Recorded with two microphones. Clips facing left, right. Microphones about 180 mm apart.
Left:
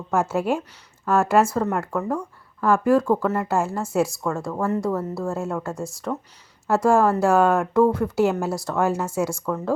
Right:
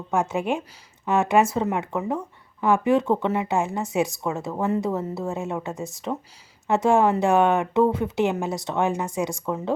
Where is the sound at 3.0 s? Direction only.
25° right (ahead or behind).